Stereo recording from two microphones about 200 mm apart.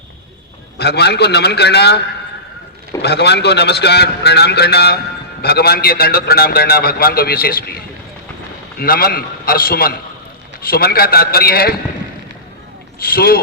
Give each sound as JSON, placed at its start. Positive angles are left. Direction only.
{"t": 0.8, "sound": "a man's voice", "side_deg": 55}
{"t": 3.0, "sound": "a man's voice", "side_deg": 55}
{"t": 8.8, "sound": "a man's voice", "side_deg": 50}
{"t": 13.0, "sound": "a man's voice", "side_deg": 50}